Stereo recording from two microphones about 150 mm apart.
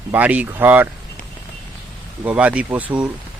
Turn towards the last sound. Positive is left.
turn(degrees=-10)  # may be behind; listen again after turning